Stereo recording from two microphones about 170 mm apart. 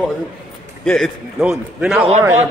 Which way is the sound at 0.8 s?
5° left (ahead or behind).